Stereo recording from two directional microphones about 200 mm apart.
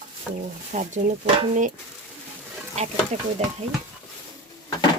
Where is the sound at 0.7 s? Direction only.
35° right (ahead or behind).